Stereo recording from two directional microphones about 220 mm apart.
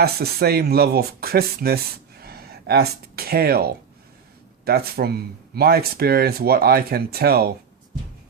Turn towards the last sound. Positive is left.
turn(degrees=-45)  # may be behind; listen again after turning